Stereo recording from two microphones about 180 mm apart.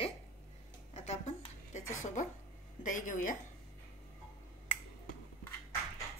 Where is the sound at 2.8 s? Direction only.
45° left (ahead or behind).